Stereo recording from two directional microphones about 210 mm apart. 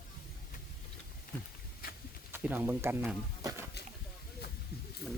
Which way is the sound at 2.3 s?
10° right (ahead or behind).